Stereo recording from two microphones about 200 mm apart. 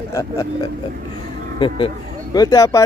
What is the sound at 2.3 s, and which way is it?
Speech, 20° left (ahead or behind).